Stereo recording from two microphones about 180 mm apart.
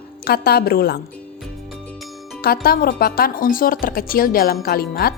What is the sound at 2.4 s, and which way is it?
A woman's voice, 55° left (ahead or behind).